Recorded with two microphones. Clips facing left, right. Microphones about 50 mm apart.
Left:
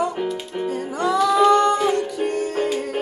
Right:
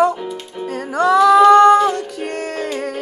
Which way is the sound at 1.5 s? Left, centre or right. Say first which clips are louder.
Right 8 dB; right.